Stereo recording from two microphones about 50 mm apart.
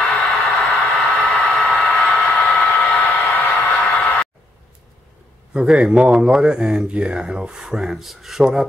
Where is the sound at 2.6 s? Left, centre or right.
Left.